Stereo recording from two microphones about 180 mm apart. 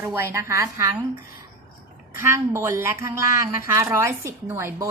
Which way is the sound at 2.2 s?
15° right (ahead or behind).